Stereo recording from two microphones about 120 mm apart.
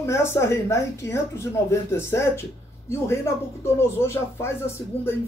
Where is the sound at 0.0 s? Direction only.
20° left (ahead or behind).